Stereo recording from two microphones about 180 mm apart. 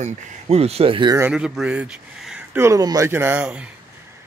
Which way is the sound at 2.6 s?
20° right (ahead or behind).